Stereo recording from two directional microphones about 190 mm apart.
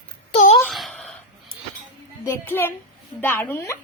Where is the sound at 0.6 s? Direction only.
Centre (ahead or behind).